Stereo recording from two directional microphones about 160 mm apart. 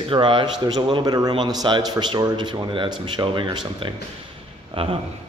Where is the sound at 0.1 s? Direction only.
30° right (ahead or behind).